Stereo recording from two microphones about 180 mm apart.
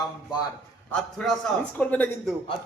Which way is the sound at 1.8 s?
10° left (ahead or behind).